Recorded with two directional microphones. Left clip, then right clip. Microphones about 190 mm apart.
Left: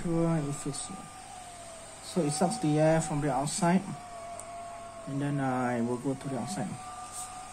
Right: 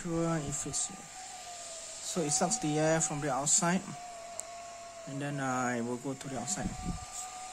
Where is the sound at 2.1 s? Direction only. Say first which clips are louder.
Left 2 dB; 40° right (ahead or behind).